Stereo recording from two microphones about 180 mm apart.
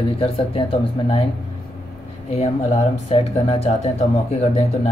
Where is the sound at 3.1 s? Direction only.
35° left (ahead or behind).